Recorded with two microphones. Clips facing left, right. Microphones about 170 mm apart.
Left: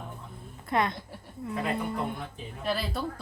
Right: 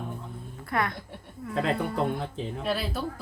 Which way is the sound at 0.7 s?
20° left (ahead or behind).